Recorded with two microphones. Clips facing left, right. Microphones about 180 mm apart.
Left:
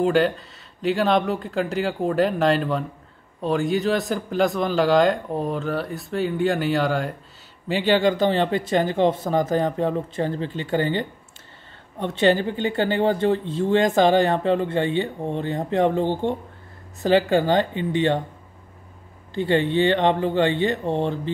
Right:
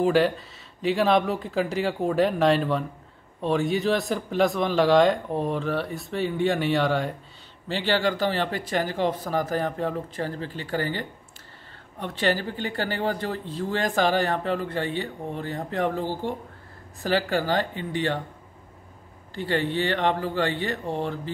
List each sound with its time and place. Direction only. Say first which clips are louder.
0.0 s a man's voice: left 1 dB; centre (ahead or behind)
7.6 s speech: left 5 dB; 15° left (ahead or behind)
19.3 s speech: left 6 dB; 20° left (ahead or behind)